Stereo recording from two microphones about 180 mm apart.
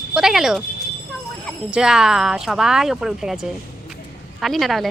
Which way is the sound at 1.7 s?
5° right (ahead or behind).